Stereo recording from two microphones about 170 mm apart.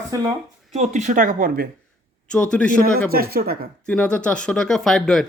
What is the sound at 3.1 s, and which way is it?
Speech, 65° right (ahead or behind).